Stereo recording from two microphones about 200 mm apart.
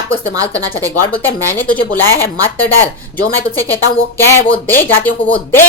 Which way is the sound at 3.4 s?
10° left (ahead or behind).